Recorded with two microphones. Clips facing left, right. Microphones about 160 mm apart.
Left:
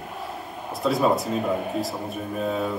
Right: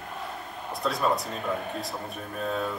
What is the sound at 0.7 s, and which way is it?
Speech, centre (ahead or behind).